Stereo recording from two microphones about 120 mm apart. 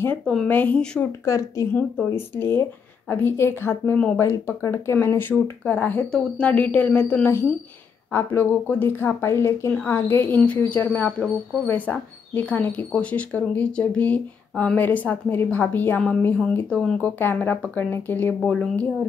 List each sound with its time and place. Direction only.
0.2 s a woman's voice: 5° left (ahead or behind)
1.2 s a woman's voice: 25° left (ahead or behind); by 18.9 s 5° left (ahead or behind)